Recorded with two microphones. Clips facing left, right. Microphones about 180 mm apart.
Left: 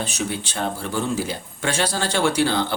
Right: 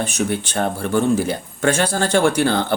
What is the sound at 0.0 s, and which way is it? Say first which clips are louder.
Speech: right 5 dB; 55° right (ahead or behind).